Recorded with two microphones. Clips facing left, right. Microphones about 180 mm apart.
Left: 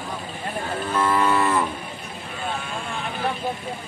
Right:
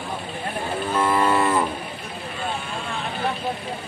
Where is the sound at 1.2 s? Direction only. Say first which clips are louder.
Right 1 dB; 25° right (ahead or behind).